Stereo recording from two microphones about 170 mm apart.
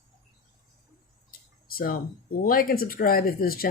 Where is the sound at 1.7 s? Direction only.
60° left (ahead or behind).